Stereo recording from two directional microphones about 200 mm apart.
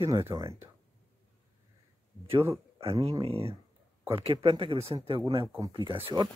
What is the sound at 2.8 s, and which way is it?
Speech, 30° right (ahead or behind).